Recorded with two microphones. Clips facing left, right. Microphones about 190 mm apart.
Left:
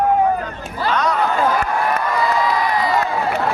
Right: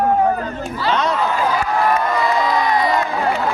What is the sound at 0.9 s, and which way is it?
Speech, 25° right (ahead or behind).